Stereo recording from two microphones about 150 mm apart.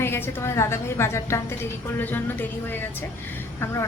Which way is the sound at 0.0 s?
15° left (ahead or behind).